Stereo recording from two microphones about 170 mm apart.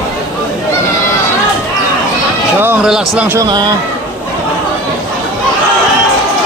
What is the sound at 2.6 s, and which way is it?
Speech, 10° right (ahead or behind).